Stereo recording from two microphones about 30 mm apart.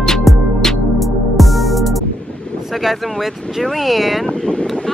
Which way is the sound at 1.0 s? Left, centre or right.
Centre.